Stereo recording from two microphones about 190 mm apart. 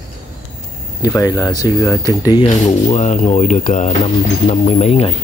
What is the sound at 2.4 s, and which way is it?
Speech, 40° left (ahead or behind).